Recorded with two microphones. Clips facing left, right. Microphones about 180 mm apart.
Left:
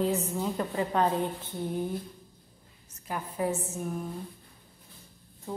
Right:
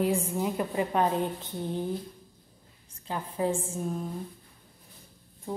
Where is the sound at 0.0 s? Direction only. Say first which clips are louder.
Right 1 dB; 10° right (ahead or behind).